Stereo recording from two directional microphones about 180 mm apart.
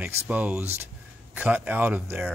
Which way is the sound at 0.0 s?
10° right (ahead or behind).